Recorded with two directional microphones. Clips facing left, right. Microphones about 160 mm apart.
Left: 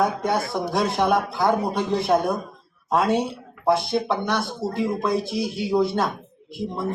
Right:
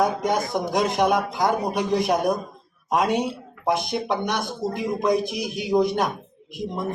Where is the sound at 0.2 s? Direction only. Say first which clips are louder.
Even; 15° right (ahead or behind).